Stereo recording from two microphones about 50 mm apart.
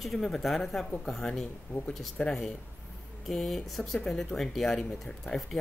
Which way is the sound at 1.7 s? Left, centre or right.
Left.